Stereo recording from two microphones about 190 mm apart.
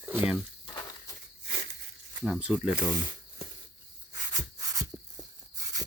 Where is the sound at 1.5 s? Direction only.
65° right (ahead or behind).